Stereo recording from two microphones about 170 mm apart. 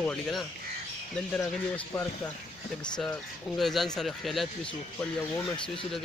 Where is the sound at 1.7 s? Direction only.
10° left (ahead or behind).